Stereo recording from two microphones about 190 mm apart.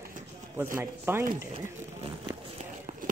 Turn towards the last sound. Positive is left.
turn(degrees=-45)  # may be behind; listen again after turning